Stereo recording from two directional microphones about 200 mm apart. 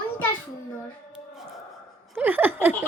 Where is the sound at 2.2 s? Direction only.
10° right (ahead or behind).